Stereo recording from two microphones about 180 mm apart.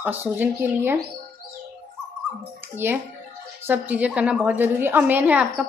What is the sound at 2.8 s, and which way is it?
A woman's voice, 10° right (ahead or behind).